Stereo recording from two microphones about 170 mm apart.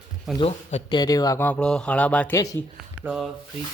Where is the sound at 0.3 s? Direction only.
5° right (ahead or behind).